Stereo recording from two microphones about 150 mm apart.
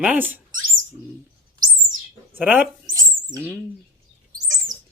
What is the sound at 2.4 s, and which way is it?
Speech, 10° right (ahead or behind).